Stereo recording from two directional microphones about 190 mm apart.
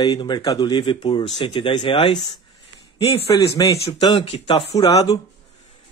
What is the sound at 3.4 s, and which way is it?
Speech, 20° left (ahead or behind).